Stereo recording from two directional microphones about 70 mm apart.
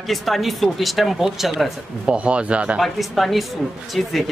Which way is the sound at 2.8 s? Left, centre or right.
Centre.